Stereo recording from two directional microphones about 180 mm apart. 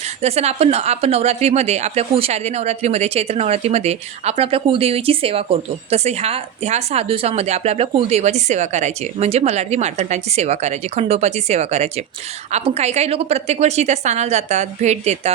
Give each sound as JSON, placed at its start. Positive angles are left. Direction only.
{"t": 0.2, "sound": "speech", "side_deg": -35}